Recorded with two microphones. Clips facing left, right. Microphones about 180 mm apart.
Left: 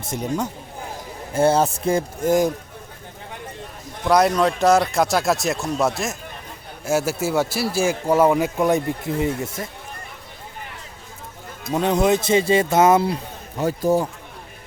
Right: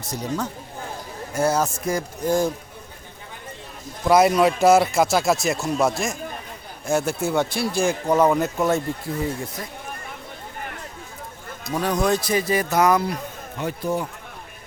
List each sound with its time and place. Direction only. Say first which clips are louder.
0.0 s speech: left 2 dB; 25° left (ahead or behind)
4.0 s speech: right 1 dB; 5° right (ahead or behind); by 9.6 s 20° left (ahead or behind)
11.7 s speech: left 3 dB; 20° left (ahead or behind)
13.6 s a man's voice: left 6 dB; 40° left (ahead or behind)